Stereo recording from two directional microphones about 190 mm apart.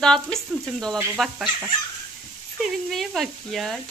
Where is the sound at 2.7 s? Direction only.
Centre (ahead or behind).